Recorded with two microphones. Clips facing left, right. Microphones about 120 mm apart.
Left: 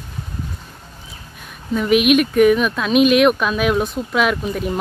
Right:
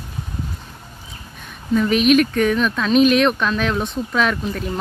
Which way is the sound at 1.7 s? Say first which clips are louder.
Even; 5° left (ahead or behind).